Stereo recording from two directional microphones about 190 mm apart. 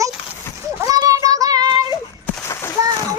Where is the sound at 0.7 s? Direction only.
15° right (ahead or behind).